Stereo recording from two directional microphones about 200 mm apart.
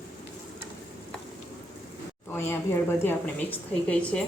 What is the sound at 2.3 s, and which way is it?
A woman's voice, 10° left (ahead or behind).